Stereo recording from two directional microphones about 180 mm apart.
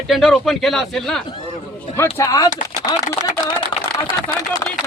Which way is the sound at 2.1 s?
20° left (ahead or behind).